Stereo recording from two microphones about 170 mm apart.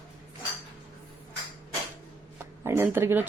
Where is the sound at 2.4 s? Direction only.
15° right (ahead or behind).